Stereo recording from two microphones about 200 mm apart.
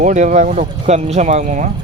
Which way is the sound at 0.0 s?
40° right (ahead or behind).